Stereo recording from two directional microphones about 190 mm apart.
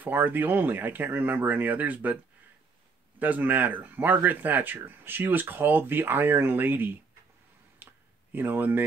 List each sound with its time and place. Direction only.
0.0 s speech: 10° right (ahead or behind)
3.2 s speech: 10° right (ahead or behind)
7.8 s a sound: 10° right (ahead or behind)